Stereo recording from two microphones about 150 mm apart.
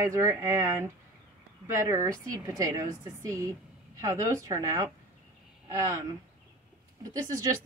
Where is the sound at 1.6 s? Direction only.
20° right (ahead or behind).